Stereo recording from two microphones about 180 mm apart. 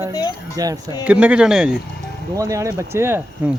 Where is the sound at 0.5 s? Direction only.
20° right (ahead or behind).